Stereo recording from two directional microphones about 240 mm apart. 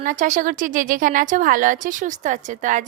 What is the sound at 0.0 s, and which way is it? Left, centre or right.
A woman's voice, right.